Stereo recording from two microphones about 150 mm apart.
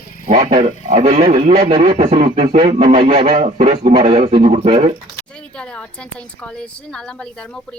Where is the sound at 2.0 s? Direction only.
55° right (ahead or behind).